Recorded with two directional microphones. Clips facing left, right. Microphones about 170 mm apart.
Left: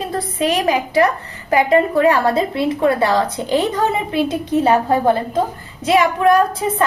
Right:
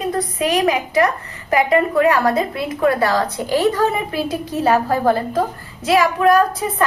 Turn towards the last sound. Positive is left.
turn(degrees=25)  # may be behind; listen again after turning